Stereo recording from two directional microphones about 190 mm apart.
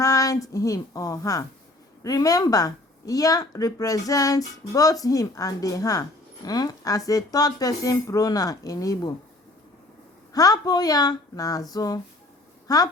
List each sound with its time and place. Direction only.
0.0 s a woman's voice: 20° left (ahead or behind)
10.3 s speech: 20° left (ahead or behind)